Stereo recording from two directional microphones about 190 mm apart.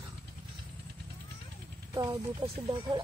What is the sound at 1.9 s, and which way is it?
Speech, 20° right (ahead or behind).